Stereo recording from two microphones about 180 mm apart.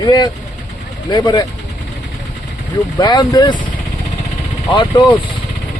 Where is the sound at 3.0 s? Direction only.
25° left (ahead or behind).